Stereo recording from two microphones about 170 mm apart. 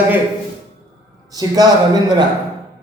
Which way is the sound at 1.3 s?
20° right (ahead or behind).